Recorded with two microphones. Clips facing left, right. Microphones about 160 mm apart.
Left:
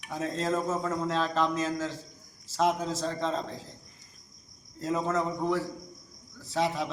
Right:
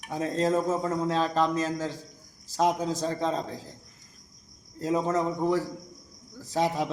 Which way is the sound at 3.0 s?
5° right (ahead or behind).